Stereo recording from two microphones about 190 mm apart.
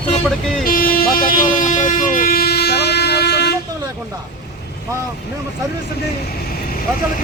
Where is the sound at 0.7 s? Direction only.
50° left (ahead or behind).